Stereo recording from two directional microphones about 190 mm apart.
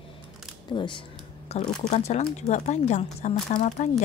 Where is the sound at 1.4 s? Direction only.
35° left (ahead or behind).